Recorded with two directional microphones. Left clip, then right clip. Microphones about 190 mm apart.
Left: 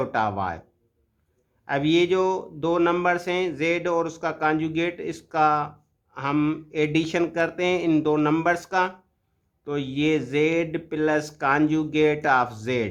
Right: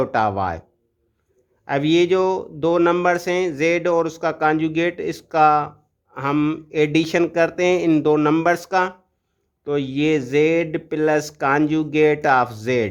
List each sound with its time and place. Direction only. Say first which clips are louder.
0.0 s speech: right 5 dB; 30° right (ahead or behind)
1.6 s speech: right 4 dB; 30° right (ahead or behind)